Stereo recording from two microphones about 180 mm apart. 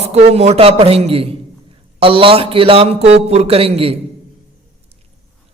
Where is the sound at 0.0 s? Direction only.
35° right (ahead or behind).